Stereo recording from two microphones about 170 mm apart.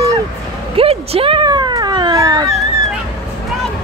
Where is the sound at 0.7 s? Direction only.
35° right (ahead or behind).